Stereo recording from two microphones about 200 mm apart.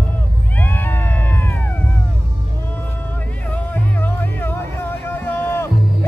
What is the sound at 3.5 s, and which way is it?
Music, 10° left (ahead or behind).